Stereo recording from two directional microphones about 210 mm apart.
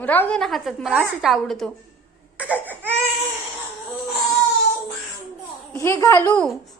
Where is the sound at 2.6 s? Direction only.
10° right (ahead or behind).